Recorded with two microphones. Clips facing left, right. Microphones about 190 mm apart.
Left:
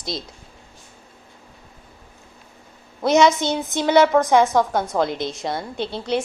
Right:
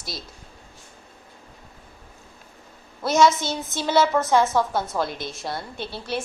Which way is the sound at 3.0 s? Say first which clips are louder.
Left 3 dB; 20° left (ahead or behind).